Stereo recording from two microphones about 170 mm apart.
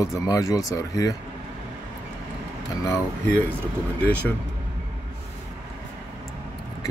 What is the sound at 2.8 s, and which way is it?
Speech, 15° left (ahead or behind).